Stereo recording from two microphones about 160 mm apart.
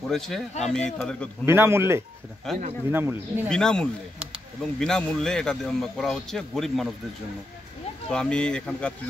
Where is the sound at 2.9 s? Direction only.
15° right (ahead or behind).